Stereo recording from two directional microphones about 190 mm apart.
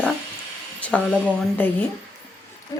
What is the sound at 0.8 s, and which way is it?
Speech, 5° left (ahead or behind).